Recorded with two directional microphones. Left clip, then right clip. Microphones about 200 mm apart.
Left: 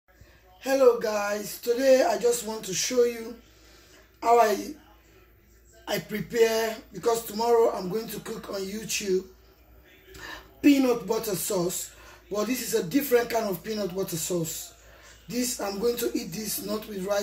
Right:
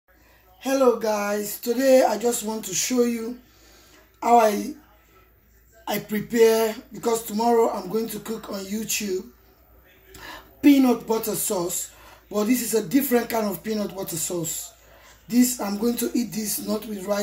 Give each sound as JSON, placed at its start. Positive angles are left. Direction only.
{"t": 0.6, "sound": "speech", "side_deg": -45}
{"t": 4.2, "sound": "speech", "side_deg": -45}
{"t": 5.9, "sound": "speech", "side_deg": -50}
{"t": 10.2, "sound": "speech", "side_deg": -45}